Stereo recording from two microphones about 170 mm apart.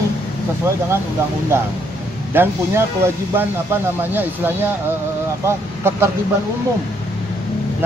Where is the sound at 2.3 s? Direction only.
15° right (ahead or behind).